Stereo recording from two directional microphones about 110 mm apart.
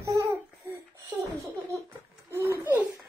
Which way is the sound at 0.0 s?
30° right (ahead or behind).